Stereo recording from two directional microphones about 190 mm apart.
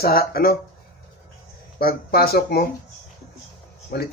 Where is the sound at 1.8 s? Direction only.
55° left (ahead or behind).